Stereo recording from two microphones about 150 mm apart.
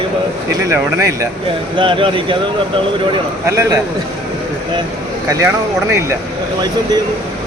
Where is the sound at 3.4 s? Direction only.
20° right (ahead or behind).